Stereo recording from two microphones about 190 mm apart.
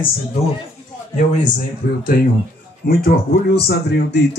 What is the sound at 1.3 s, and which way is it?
Speech, 45° left (ahead or behind).